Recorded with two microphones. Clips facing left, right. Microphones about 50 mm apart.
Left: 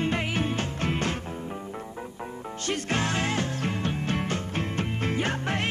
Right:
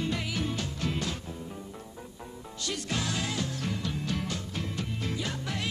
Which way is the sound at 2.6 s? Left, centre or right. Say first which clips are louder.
Left 5 dB; left.